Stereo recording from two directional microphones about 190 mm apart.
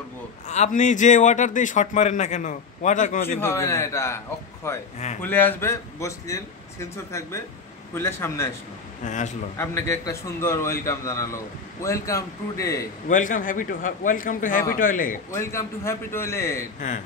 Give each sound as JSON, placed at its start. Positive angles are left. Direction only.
{"t": 0.5, "sound": "a man's voice", "side_deg": 40}
{"t": 3.3, "sound": "a man's voice", "side_deg": 15}
{"t": 9.0, "sound": "a man's voice", "side_deg": 40}
{"t": 9.6, "sound": "a man's voice", "side_deg": 15}
{"t": 13.1, "sound": "a man's voice", "side_deg": 45}
{"t": 15.3, "sound": "a man's voice", "side_deg": 15}